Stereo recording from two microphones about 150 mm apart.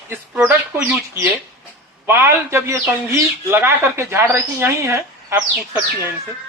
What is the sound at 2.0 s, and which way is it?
Speech, 15° right (ahead or behind).